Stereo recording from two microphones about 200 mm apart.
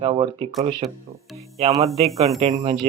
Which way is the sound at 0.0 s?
30° right (ahead or behind).